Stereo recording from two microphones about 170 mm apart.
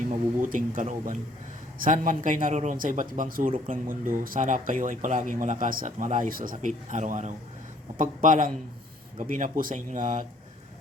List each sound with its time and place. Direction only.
0.0 s speech: 50° right (ahead or behind)